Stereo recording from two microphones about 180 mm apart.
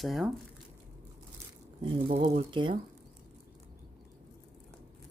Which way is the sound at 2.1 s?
35° right (ahead or behind).